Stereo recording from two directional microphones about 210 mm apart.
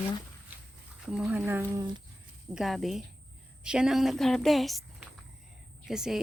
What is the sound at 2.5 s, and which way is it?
A woman's voice, centre (ahead or behind).